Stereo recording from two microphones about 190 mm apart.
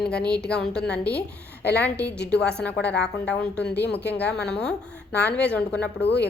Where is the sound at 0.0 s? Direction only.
5° left (ahead or behind).